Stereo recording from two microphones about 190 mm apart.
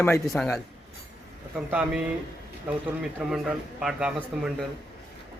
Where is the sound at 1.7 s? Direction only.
5° right (ahead or behind).